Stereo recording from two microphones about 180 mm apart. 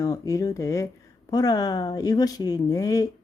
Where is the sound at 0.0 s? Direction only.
20° left (ahead or behind).